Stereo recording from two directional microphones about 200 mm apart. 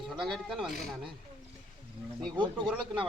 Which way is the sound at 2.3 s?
25° right (ahead or behind).